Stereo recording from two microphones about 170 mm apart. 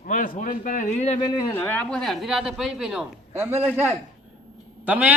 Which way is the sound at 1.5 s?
10° left (ahead or behind).